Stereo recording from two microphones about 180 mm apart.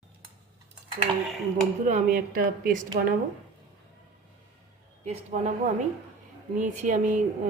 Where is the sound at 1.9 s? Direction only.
45° right (ahead or behind).